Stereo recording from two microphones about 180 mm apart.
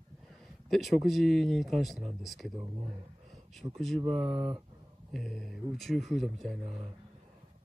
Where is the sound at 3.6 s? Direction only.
Centre (ahead or behind).